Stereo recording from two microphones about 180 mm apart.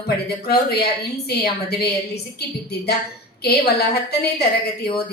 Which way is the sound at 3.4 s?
60° left (ahead or behind).